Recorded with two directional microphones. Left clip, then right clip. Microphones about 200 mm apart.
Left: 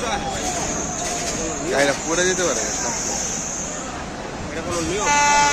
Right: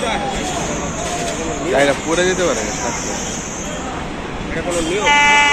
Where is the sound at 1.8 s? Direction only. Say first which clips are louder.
Right 4 dB; 10° left (ahead or behind).